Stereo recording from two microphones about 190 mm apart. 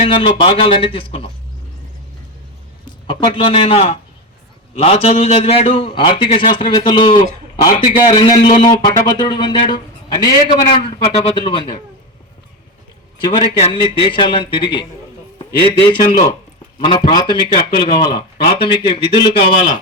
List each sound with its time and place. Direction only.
0.0 s a man's voice: 25° left (ahead or behind)
2.8 s a man's voice: 25° left (ahead or behind)
10.8 s a man's voice: 30° left (ahead or behind)
13.2 s a man's voice: 25° left (ahead or behind)